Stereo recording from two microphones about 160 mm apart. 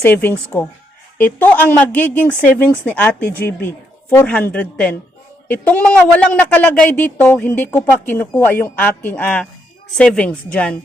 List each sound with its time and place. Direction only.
0.0 s a woman's voice: 15° left (ahead or behind)